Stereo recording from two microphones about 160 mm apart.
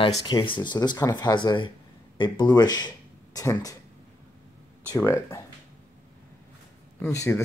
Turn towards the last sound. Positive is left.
turn(degrees=20)  # may be behind; listen again after turning